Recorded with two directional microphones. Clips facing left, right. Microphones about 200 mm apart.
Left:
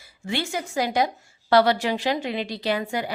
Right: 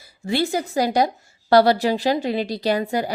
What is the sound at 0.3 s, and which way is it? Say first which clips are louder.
A woman's voice: right 6 dB; 35° right (ahead or behind).